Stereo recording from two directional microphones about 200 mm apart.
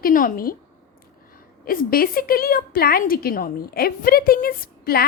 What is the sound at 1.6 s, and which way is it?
A woman's voice, 45° left (ahead or behind).